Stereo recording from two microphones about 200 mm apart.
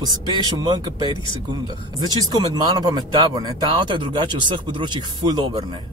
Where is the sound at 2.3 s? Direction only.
20° right (ahead or behind).